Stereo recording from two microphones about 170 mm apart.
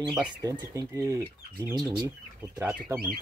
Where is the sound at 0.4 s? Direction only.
20° right (ahead or behind).